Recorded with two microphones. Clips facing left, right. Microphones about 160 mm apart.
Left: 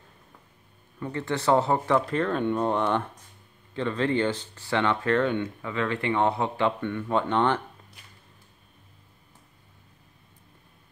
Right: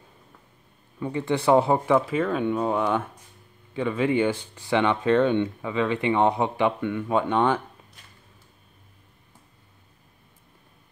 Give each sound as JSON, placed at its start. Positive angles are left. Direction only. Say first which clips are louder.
{"t": 0.9, "sound": "speech", "louder": "right 4 dB", "side_deg": -15}